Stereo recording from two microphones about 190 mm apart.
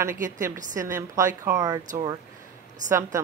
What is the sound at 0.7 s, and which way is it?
A woman's voice, 15° right (ahead or behind).